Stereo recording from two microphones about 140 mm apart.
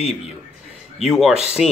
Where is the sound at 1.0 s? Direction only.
Centre (ahead or behind).